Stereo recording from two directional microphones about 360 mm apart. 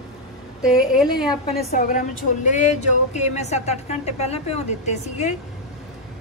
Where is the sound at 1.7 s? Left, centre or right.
Left.